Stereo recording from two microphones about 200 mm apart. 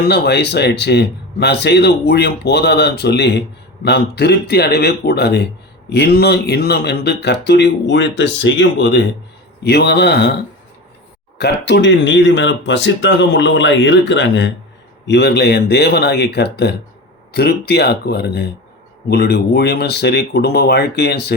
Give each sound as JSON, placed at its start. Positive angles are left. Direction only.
{"t": 0.0, "sound": "speech", "side_deg": 55}
{"t": 11.3, "sound": "speech", "side_deg": 55}